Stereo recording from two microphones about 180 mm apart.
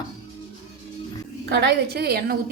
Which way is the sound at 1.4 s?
65° right (ahead or behind).